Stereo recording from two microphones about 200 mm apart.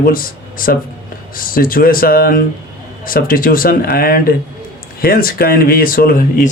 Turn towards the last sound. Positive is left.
turn(degrees=45)  # may be behind; listen again after turning